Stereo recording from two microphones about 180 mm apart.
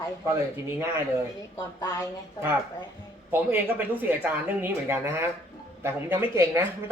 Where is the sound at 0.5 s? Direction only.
15° right (ahead or behind).